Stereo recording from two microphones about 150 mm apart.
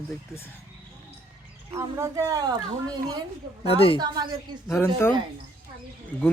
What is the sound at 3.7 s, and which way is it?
Speech, 40° left (ahead or behind).